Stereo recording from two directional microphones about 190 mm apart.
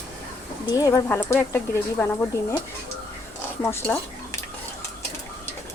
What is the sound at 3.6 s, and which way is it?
Speech, 15° left (ahead or behind).